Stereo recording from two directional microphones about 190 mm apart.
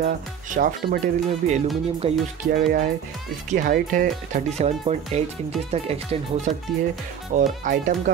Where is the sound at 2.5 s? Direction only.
45° right (ahead or behind).